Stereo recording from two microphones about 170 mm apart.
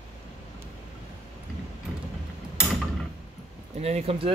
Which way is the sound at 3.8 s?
40° right (ahead or behind).